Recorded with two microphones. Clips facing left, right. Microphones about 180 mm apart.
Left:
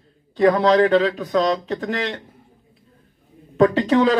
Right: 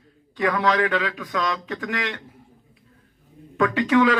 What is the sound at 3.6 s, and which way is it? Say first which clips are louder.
Speech: left 3 dB; 40° left (ahead or behind).